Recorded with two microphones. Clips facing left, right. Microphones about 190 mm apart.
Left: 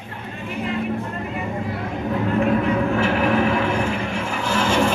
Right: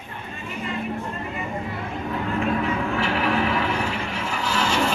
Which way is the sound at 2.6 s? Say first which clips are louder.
Left 5 dB; 45° left (ahead or behind).